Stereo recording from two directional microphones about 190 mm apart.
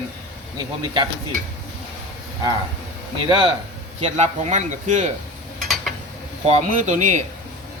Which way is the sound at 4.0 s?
35° right (ahead or behind).